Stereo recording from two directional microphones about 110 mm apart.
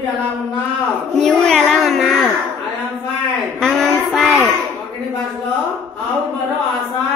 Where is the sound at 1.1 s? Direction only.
5° left (ahead or behind).